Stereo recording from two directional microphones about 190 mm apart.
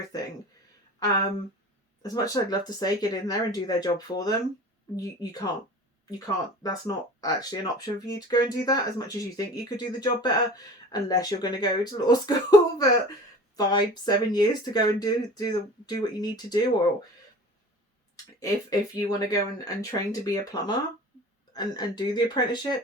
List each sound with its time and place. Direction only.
2.0 s speech: 20° left (ahead or behind)
18.3 s speech: 20° left (ahead or behind)